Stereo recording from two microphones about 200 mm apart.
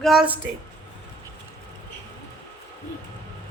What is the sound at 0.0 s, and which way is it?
Speech, centre (ahead or behind).